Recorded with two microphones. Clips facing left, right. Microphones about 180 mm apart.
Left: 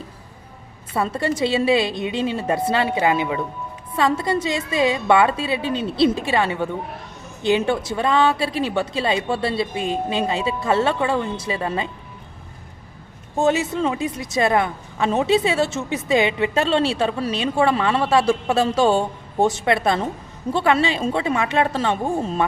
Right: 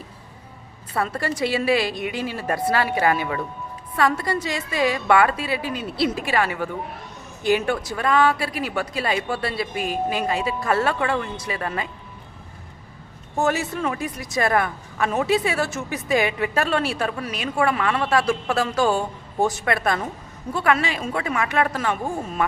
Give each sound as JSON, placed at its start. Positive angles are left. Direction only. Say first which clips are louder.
{"t": 0.9, "sound": "a woman's voice", "louder": "left 3 dB", "side_deg": 25}
{"t": 13.3, "sound": "a woman's voice", "louder": "left 3 dB", "side_deg": 20}